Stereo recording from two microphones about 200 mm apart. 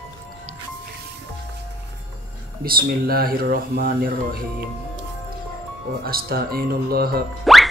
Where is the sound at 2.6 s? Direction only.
50° right (ahead or behind).